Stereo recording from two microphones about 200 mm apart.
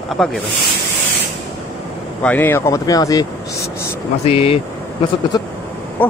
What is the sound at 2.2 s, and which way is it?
Speech, 10° left (ahead or behind).